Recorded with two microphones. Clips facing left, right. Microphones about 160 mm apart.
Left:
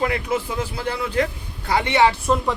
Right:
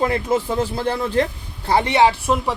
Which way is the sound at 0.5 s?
45° right (ahead or behind).